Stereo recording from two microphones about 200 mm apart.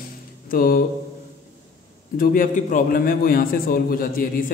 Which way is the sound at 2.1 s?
45° left (ahead or behind).